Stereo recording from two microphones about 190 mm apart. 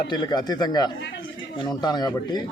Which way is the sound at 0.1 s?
20° left (ahead or behind).